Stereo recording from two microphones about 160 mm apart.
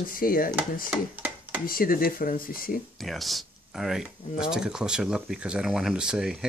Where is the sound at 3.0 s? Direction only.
Centre (ahead or behind).